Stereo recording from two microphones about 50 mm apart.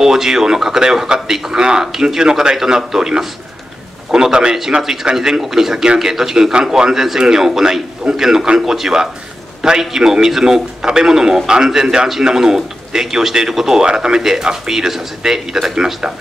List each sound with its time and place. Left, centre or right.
0.0 s a man's voice: centre